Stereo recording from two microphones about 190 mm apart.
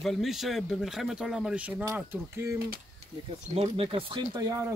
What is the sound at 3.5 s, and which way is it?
Speech, 30° right (ahead or behind).